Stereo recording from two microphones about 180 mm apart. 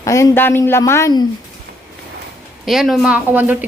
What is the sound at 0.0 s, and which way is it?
A woman's voice, 15° left (ahead or behind).